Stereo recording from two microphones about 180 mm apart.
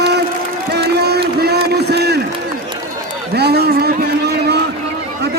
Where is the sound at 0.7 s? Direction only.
65° right (ahead or behind).